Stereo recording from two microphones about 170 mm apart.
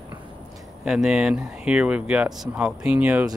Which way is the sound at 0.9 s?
5° right (ahead or behind).